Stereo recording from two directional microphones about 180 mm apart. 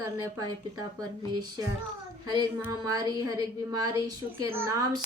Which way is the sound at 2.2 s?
25° right (ahead or behind).